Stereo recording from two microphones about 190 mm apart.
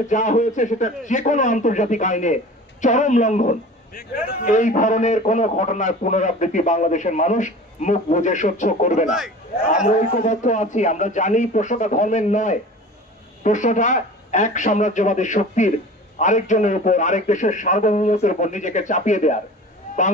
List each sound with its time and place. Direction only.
0.1 s a man's voice: 40° left (ahead or behind)